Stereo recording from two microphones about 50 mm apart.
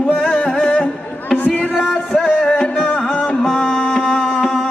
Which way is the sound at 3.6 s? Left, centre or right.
Left.